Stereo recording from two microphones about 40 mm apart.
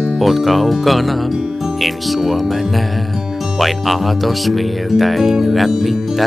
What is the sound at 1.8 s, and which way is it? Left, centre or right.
Speech, centre.